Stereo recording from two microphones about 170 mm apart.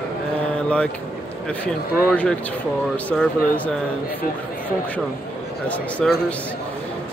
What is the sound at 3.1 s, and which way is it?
Speech, 10° left (ahead or behind).